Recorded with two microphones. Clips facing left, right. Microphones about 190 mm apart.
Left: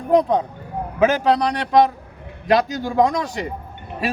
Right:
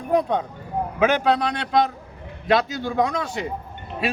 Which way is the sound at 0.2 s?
40° left (ahead or behind).